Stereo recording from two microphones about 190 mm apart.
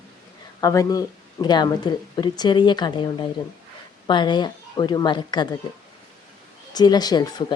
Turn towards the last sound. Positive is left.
turn(degrees=20)  # may be behind; listen again after turning